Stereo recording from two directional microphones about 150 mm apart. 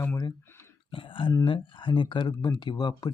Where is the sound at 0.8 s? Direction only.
35° left (ahead or behind).